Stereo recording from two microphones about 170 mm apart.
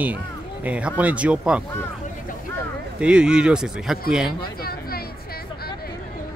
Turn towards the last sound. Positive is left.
turn(degrees=65)  # may be behind; listen again after turning